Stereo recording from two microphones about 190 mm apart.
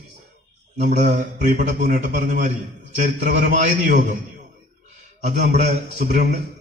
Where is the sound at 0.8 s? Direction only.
50° right (ahead or behind).